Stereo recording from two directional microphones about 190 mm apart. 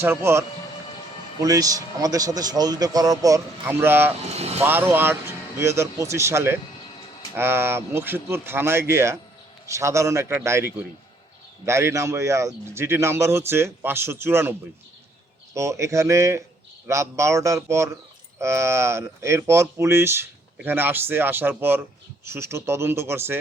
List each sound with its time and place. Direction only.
0.0 s a man's voice: 10° right (ahead or behind)
4.4 s speech: 35° right (ahead or behind)
4.6 s speech: 10° right (ahead or behind)
15.5 s speech: 15° right (ahead or behind)